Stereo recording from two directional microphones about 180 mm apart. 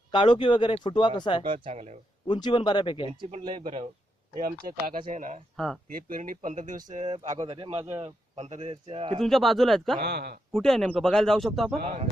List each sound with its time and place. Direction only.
0.1 s speech: 25° left (ahead or behind)
1.6 s a man's voice: 40° right (ahead or behind)
2.2 s speech: 25° left (ahead or behind)
3.1 s speech: 25° right (ahead or behind)
4.4 s speech: 50° right (ahead or behind)
5.5 s speech: 5° left (ahead or behind)
5.9 s speech: 50° right (ahead or behind)
7.3 s a man's voice: 30° right (ahead or behind)
9.2 s speech: centre (ahead or behind)
10.0 s speech: 65° right (ahead or behind)
10.5 s speech: centre (ahead or behind)